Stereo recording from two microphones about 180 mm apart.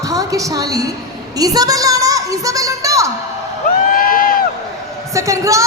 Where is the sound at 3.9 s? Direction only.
50° left (ahead or behind).